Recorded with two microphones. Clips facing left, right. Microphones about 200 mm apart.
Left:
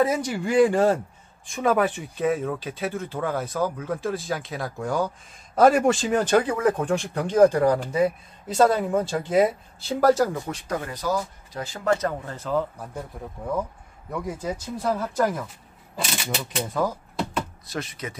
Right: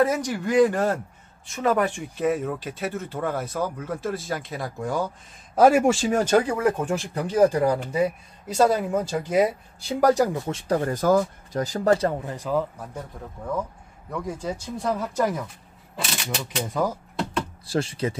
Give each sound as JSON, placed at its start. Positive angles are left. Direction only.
{"t": 0.0, "sound": "speech", "side_deg": 10}
{"t": 10.9, "sound": "speech", "side_deg": -50}
{"t": 12.3, "sound": "speech", "side_deg": -10}
{"t": 14.1, "sound": "speech", "side_deg": 5}
{"t": 17.6, "sound": "speech", "side_deg": -30}